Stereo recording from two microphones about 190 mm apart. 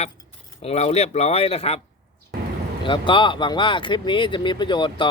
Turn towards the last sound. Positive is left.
turn(degrees=25)  # may be behind; listen again after turning